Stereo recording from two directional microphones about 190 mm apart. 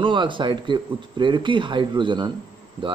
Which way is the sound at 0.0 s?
25° right (ahead or behind).